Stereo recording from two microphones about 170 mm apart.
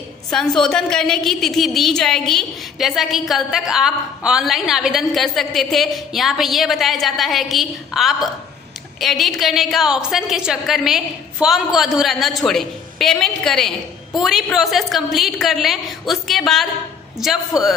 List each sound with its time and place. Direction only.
0.6 s a woman's voice: 5° left (ahead or behind)